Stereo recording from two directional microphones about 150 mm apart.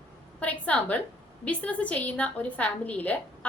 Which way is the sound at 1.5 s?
10° left (ahead or behind).